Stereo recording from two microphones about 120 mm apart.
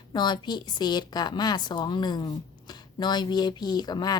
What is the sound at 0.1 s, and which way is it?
Speech, 35° left (ahead or behind).